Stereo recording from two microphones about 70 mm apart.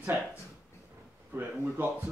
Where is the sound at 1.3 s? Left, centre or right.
Right.